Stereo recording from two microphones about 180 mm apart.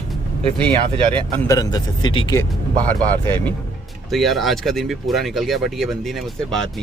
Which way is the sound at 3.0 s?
10° left (ahead or behind).